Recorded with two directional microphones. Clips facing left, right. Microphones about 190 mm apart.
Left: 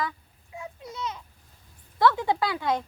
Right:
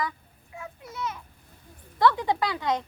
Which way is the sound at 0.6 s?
15° left (ahead or behind).